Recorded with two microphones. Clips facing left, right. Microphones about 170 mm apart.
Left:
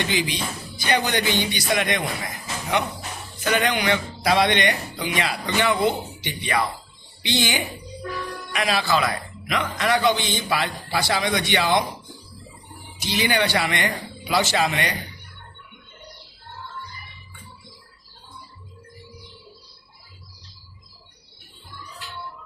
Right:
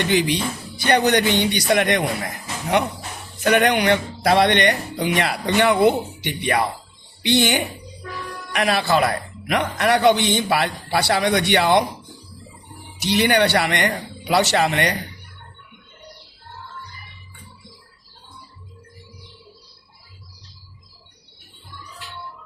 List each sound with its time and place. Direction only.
0.0 s a man's voice: 55° right (ahead or behind)
3.4 s a man's voice: 60° right (ahead or behind)
13.0 s a man's voice: 60° right (ahead or behind)